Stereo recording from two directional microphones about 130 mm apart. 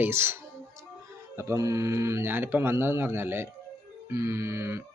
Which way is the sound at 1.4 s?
20° right (ahead or behind).